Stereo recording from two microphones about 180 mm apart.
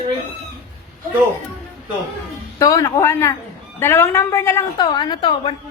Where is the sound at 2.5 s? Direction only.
20° left (ahead or behind).